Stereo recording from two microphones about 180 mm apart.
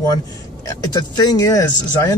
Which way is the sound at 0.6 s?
20° left (ahead or behind).